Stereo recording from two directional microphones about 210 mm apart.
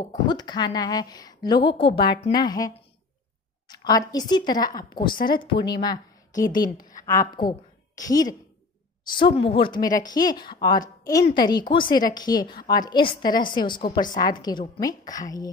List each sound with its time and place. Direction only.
0.3 s a woman's voice: 20° left (ahead or behind)